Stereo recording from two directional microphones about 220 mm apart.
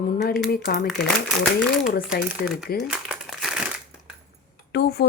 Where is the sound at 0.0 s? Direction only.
40° left (ahead or behind).